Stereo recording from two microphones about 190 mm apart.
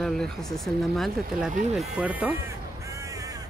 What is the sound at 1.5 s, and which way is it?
Speech, 40° right (ahead or behind).